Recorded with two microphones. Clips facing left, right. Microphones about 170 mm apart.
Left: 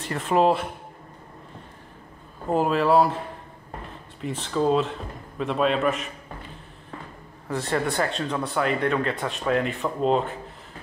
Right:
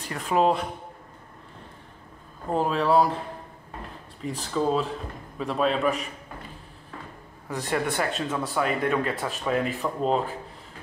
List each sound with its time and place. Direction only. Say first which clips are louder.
0.1 s speech: left 2 dB; centre (ahead or behind)
2.5 s speech: left 2 dB; 5° left (ahead or behind)
4.4 s speech: left 3 dB; centre (ahead or behind)
7.5 s speech: left 2 dB; 15° right (ahead or behind)
7.8 s speech: left 1 dB; centre (ahead or behind)